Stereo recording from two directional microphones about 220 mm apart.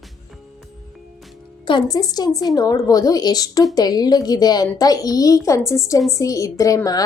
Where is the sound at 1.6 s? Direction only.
20° left (ahead or behind).